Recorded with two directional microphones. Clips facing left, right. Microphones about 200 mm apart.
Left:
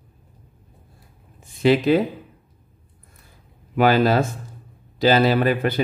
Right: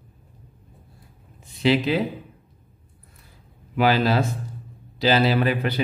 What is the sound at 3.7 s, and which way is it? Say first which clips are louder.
A man's voice: left 3 dB; 50° left (ahead or behind).